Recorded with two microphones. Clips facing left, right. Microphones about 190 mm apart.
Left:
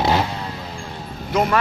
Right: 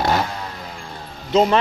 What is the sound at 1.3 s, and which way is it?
Vehicle, 25° right (ahead or behind).